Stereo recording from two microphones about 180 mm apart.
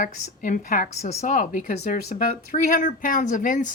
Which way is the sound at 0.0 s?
45° left (ahead or behind).